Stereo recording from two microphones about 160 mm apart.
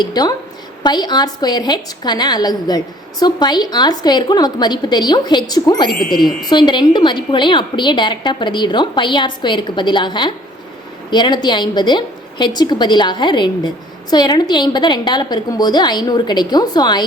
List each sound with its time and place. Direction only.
0.0 s a woman's voice: 25° left (ahead or behind)
6.1 s speech: centre (ahead or behind)
6.5 s a woman's voice: 30° left (ahead or behind)